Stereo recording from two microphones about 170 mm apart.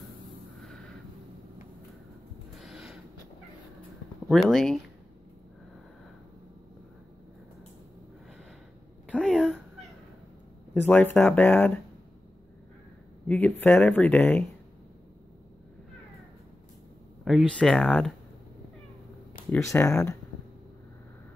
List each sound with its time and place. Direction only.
0.6 s a sound: 5° left (ahead or behind)
2.6 s snort: 5° right (ahead or behind)
4.3 s speech: centre (ahead or behind)
9.1 s a sound: 5° left (ahead or behind)
10.7 s speech: 10° left (ahead or behind)
13.3 s speech: 10° left (ahead or behind)
17.2 s speech: centre (ahead or behind)
19.5 s speech: 15° left (ahead or behind)